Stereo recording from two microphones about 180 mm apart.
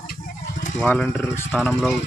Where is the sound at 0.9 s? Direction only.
10° left (ahead or behind).